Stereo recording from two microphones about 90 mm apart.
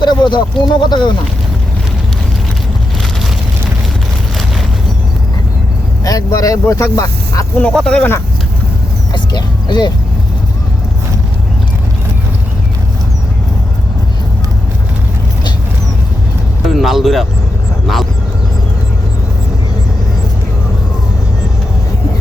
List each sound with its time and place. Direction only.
0.0 s speech: 55° left (ahead or behind)
6.1 s speech: 40° left (ahead or behind)
7.7 s speech: 5° left (ahead or behind)
9.1 s speech: 55° left (ahead or behind)
16.6 s speech: centre (ahead or behind)